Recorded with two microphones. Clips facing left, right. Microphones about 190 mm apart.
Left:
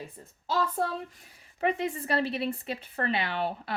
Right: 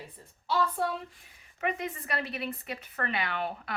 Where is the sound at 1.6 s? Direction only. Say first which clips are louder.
Left 5 dB; 30° left (ahead or behind).